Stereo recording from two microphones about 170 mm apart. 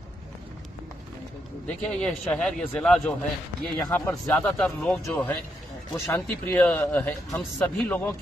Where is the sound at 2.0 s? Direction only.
5° left (ahead or behind).